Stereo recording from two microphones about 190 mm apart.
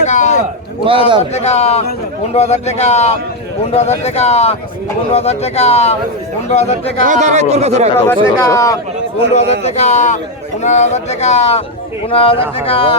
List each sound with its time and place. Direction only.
0.0 s a sound: 40° left (ahead or behind)
0.9 s a man's voice: 25° right (ahead or behind)
1.2 s speech: 35° left (ahead or behind)
7.0 s speech: 40° right (ahead or behind)
7.9 s speech: 15° left (ahead or behind)
9.3 s speech: 35° left (ahead or behind)